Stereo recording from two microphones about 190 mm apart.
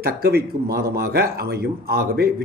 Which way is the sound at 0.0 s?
55° right (ahead or behind).